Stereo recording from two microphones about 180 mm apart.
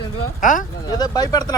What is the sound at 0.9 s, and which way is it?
Speech, 20° left (ahead or behind).